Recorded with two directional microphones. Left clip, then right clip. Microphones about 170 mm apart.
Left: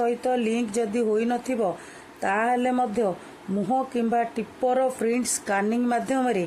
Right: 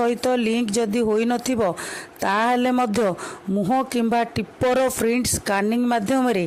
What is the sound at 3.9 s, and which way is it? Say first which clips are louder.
A man's voice: right 3 dB; 65° right (ahead or behind).